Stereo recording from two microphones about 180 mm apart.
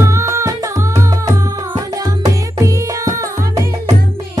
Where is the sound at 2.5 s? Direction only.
15° right (ahead or behind).